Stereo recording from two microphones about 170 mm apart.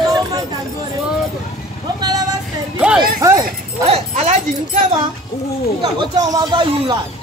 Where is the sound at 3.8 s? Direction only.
40° right (ahead or behind).